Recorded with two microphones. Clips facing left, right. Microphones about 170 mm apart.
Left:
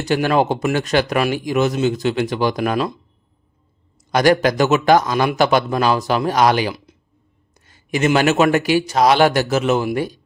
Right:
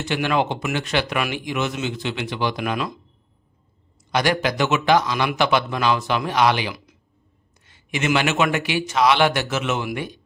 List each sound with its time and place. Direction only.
0.0 s speech: 40° left (ahead or behind)
4.1 s speech: 45° left (ahead or behind)